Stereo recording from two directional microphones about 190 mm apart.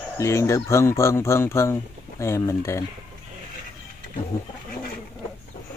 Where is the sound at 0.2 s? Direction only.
15° left (ahead or behind).